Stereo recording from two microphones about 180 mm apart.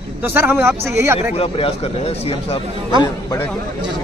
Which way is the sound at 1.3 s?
35° left (ahead or behind).